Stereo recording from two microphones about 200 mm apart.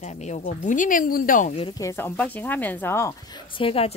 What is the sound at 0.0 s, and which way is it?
Speech, 35° left (ahead or behind).